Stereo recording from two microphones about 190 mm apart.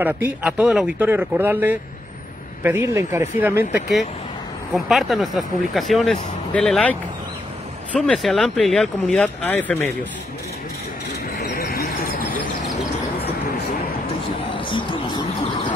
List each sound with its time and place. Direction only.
0.0 s speech: 10° right (ahead or behind)
4.7 s speech: centre (ahead or behind)
11.3 s a sound: 50° left (ahead or behind)
14.5 s music: 25° left (ahead or behind)